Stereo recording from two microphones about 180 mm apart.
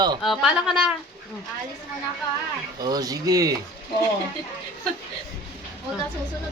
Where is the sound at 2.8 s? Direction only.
20° right (ahead or behind).